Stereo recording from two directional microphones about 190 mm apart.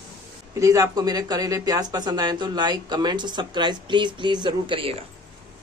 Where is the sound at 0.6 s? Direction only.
20° right (ahead or behind).